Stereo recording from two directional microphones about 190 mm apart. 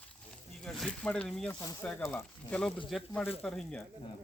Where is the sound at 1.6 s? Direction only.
20° left (ahead or behind).